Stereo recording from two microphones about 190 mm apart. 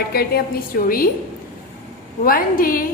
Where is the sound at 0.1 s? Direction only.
55° left (ahead or behind).